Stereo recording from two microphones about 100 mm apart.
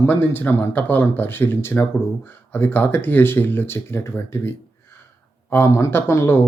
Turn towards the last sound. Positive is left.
turn(degrees=25)  # may be behind; listen again after turning